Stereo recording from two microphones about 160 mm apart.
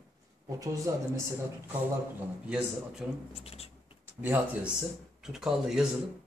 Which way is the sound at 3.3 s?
35° left (ahead or behind).